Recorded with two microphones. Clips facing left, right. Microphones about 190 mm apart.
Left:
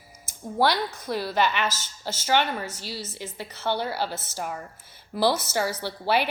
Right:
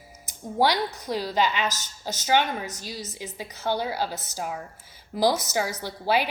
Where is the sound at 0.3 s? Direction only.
15° right (ahead or behind).